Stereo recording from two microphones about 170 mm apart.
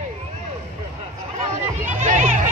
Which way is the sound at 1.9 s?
45° right (ahead or behind).